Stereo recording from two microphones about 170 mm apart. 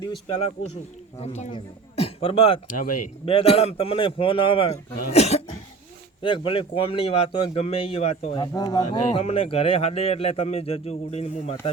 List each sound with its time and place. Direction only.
0.0 s speech: 30° left (ahead or behind)
8.5 s speech: 25° left (ahead or behind)
8.9 s speech: 35° left (ahead or behind)